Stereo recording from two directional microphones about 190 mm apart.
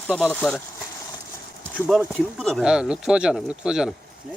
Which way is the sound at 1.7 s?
Centre (ahead or behind).